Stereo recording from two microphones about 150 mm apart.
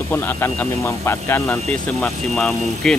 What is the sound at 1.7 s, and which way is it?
Speech, 5° left (ahead or behind).